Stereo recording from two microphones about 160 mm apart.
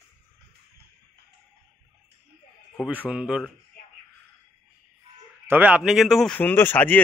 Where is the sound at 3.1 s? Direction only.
5° right (ahead or behind).